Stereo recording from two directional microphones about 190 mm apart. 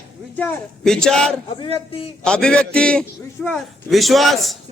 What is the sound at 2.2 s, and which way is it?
Speech, 5° left (ahead or behind).